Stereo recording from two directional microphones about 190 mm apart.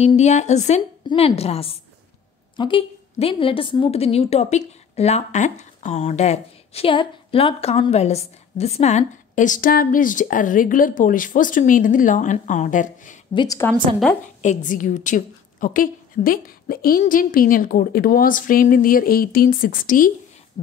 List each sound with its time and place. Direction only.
0.0 s a woman's voice: 35° left (ahead or behind)
13.3 s a woman's voice: 25° left (ahead or behind)
14.4 s a woman's voice: 40° left (ahead or behind)